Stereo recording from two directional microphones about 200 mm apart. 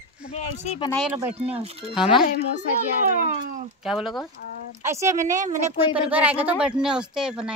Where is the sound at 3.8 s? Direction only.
Centre (ahead or behind).